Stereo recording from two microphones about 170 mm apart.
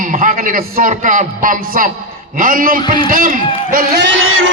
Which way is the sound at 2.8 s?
25° left (ahead or behind).